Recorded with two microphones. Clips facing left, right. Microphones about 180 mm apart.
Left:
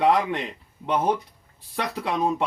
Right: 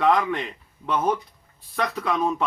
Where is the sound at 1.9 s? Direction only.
30° left (ahead or behind).